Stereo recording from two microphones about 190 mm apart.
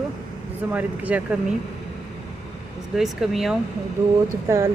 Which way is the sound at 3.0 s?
Centre (ahead or behind).